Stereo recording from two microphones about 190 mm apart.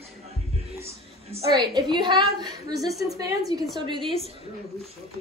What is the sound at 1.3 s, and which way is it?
A woman's voice, 25° right (ahead or behind).